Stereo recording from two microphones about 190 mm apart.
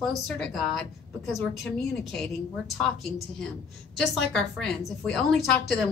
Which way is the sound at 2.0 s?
Centre (ahead or behind).